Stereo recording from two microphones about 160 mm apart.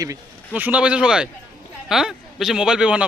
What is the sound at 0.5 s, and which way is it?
Speech, 10° right (ahead or behind).